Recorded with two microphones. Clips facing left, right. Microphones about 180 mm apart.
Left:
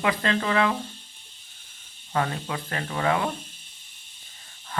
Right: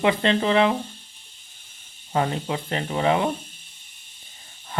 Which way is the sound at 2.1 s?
25° right (ahead or behind).